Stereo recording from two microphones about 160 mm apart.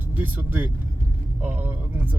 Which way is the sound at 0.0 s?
10° right (ahead or behind).